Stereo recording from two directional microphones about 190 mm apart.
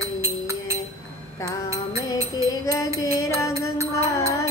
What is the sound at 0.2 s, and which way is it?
Music, 15° right (ahead or behind).